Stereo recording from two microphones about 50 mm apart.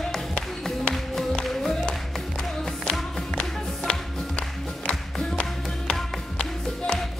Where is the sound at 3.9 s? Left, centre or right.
Centre.